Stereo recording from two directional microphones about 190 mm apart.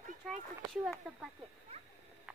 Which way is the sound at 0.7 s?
Centre (ahead or behind).